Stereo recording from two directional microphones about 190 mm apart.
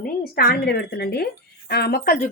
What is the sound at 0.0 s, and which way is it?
Speech, 55° left (ahead or behind).